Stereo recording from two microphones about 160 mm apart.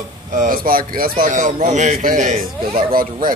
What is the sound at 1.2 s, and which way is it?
Speech, 50° right (ahead or behind).